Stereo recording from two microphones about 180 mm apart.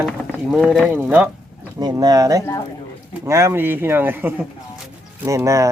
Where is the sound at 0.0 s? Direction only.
Centre (ahead or behind).